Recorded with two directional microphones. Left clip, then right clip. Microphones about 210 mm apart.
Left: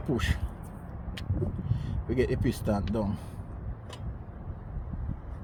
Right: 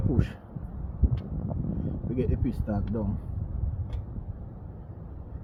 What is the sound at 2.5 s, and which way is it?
Speech, 40° left (ahead or behind).